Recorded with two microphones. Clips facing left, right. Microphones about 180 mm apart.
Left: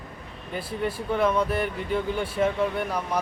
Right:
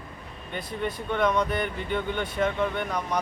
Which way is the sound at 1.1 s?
5° left (ahead or behind).